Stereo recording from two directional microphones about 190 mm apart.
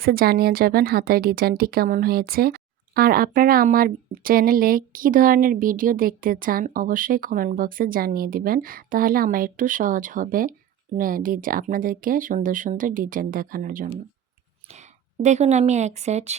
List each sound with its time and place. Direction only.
0.0 s speech: 50° right (ahead or behind)
14.7 s a woman's voice: 40° right (ahead or behind)